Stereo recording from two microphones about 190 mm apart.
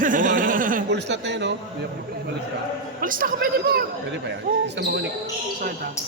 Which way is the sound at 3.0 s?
45° right (ahead or behind).